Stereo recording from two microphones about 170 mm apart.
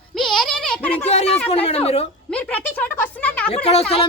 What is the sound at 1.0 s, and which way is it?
A woman's voice, 40° left (ahead or behind).